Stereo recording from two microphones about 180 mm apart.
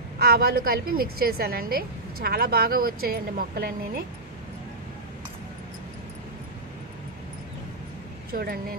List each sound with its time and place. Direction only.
0.2 s a woman's voice: 55° right (ahead or behind)
8.3 s a woman's voice: 55° right (ahead or behind)